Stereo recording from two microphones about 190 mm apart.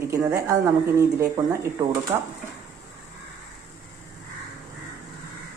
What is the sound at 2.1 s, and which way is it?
Speech, 25° right (ahead or behind).